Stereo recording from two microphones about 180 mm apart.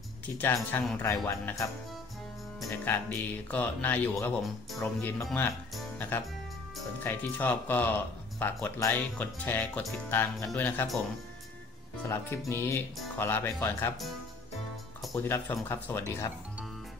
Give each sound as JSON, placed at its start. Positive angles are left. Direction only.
{"t": 0.4, "sound": "speech", "side_deg": 10}
{"t": 2.7, "sound": "speech", "side_deg": 10}
{"t": 5.8, "sound": "music", "side_deg": 10}
{"t": 7.0, "sound": "speech", "side_deg": 10}
{"t": 12.1, "sound": "speech", "side_deg": 15}
{"t": 15.1, "sound": "speech", "side_deg": 15}